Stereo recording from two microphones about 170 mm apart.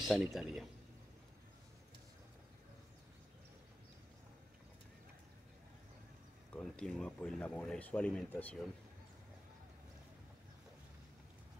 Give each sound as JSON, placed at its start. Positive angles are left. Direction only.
{"t": 0.0, "sound": "speech", "side_deg": 0}
{"t": 6.5, "sound": "speech", "side_deg": 5}